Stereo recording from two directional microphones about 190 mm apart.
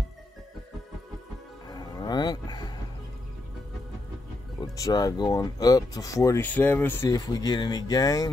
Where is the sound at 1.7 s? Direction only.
20° left (ahead or behind).